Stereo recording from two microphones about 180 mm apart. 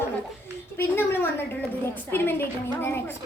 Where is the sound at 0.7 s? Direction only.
15° left (ahead or behind).